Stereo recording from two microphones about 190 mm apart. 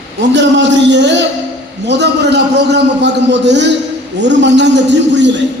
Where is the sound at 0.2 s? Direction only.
70° right (ahead or behind).